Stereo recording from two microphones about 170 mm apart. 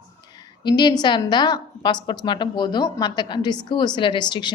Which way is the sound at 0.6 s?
25° left (ahead or behind).